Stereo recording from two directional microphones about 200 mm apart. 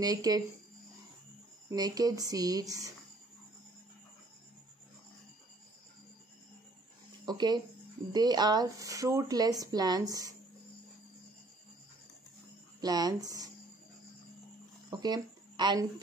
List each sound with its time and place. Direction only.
0.0 s speech: 20° right (ahead or behind)
1.7 s speech: 20° right (ahead or behind)
7.2 s speech: 20° right (ahead or behind)
12.8 s speech: 20° right (ahead or behind)
14.9 s a sound: 20° right (ahead or behind)